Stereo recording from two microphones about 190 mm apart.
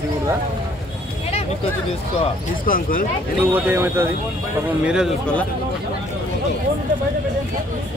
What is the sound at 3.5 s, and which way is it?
Speech, 10° right (ahead or behind).